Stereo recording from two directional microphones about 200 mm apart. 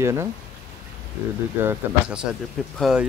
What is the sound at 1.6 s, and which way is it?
Speech, 10° right (ahead or behind).